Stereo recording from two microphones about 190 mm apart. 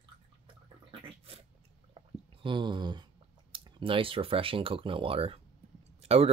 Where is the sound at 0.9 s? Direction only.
30° right (ahead or behind).